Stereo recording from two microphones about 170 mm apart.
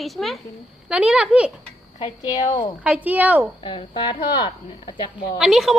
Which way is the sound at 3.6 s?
30° left (ahead or behind).